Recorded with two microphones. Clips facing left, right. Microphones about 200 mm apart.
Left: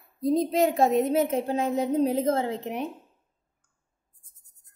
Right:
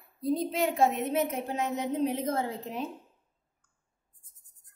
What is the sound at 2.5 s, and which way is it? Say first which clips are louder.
Speech: left 5 dB; 20° left (ahead or behind).